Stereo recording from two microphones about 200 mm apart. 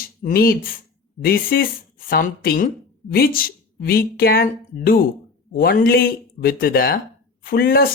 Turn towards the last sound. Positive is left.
turn(degrees=50)  # may be behind; listen again after turning